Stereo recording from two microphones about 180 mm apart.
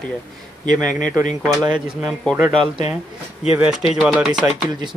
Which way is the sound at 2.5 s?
30° right (ahead or behind).